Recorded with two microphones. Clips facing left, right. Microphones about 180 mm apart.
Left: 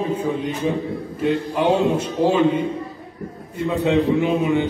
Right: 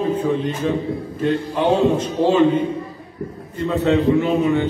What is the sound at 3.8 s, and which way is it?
Speech, 15° left (ahead or behind).